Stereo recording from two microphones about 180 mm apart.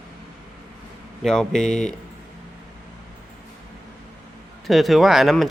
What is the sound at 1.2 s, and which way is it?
Speech, 5° left (ahead or behind).